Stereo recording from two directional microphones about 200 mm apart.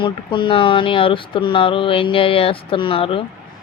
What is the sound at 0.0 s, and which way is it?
Speech, 25° left (ahead or behind).